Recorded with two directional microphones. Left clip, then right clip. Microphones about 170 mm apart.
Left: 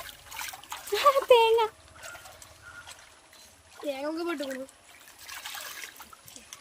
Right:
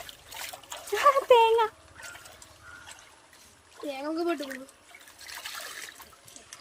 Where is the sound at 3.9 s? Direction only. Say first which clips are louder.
Left 1 dB; 20° left (ahead or behind).